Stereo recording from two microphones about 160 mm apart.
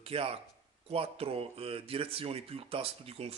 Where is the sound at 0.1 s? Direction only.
35° right (ahead or behind).